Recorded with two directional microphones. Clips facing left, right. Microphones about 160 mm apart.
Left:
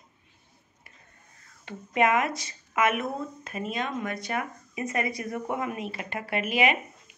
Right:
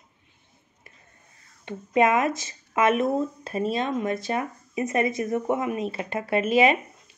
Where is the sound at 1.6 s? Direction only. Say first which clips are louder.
Right 3 dB; 20° right (ahead or behind).